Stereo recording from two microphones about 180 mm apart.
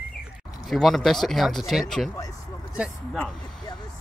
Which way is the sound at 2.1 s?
20° left (ahead or behind).